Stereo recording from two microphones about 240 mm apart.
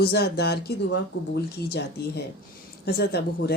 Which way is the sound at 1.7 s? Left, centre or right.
Left.